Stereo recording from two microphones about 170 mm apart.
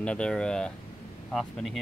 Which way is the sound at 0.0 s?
5° left (ahead or behind).